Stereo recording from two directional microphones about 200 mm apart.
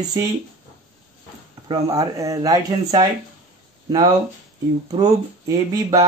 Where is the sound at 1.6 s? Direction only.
25° right (ahead or behind).